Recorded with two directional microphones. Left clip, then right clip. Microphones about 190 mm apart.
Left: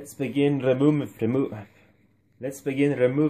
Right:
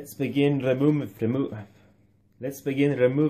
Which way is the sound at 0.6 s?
15° left (ahead or behind).